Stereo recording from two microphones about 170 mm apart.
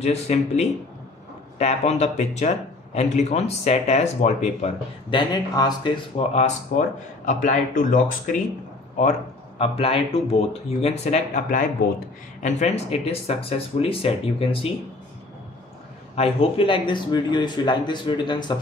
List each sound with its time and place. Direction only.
0.0 s speech: 40° left (ahead or behind)
5.1 s speech: 25° left (ahead or behind)
7.2 s speech: 50° left (ahead or behind)
9.6 s speech: 35° left (ahead or behind)
16.2 s speech: 35° left (ahead or behind)